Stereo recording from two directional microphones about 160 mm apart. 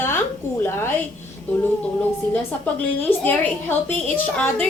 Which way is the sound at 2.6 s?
10° left (ahead or behind).